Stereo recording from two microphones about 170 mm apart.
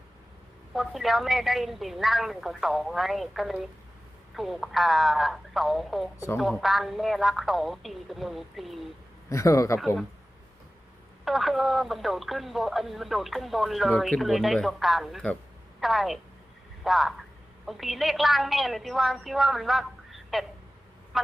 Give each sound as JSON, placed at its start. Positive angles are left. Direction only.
{"t": 0.7, "sound": "speech", "side_deg": 0}
{"t": 6.1, "sound": "a man's voice", "side_deg": 15}
{"t": 6.4, "sound": "speech", "side_deg": 0}
{"t": 9.3, "sound": "a man's voice", "side_deg": 20}
{"t": 11.3, "sound": "speech", "side_deg": 0}